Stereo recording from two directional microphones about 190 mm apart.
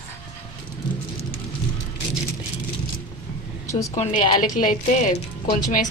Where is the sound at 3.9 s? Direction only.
35° left (ahead or behind).